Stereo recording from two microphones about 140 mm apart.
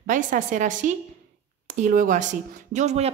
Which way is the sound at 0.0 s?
70° right (ahead or behind).